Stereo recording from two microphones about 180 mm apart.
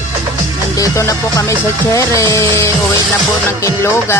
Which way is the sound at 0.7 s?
20° left (ahead or behind).